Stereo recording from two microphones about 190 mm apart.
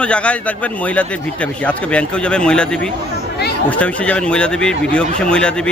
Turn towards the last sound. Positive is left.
turn(degrees=5)  # may be behind; listen again after turning